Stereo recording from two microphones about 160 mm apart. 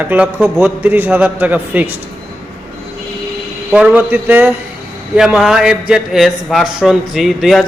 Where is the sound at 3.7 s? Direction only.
10° right (ahead or behind).